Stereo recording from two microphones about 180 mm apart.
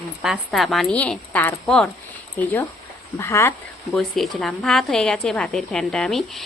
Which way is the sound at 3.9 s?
Centre (ahead or behind).